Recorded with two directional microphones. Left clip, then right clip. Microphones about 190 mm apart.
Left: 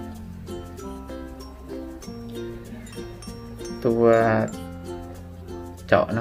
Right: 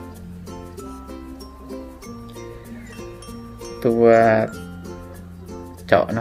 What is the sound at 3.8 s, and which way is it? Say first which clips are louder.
Speech: right 4 dB; 25° right (ahead or behind).